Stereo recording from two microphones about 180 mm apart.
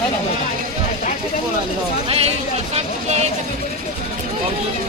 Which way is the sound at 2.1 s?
35° right (ahead or behind).